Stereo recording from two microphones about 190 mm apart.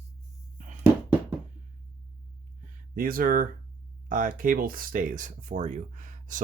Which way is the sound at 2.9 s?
50° right (ahead or behind).